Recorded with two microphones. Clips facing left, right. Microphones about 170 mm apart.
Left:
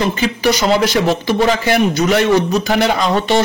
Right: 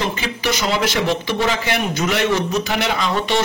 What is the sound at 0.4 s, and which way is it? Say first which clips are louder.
A man's voice: left 6 dB; 35° left (ahead or behind).